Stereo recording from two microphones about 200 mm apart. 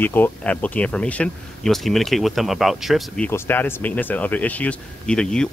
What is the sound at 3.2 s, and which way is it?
Speech, 10° left (ahead or behind).